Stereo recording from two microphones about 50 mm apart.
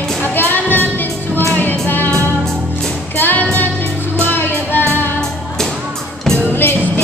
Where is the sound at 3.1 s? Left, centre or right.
Left.